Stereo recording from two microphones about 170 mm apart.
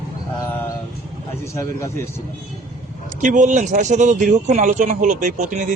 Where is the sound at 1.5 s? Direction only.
15° left (ahead or behind).